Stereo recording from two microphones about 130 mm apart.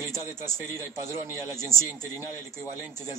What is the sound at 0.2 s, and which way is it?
A man's voice, 20° right (ahead or behind).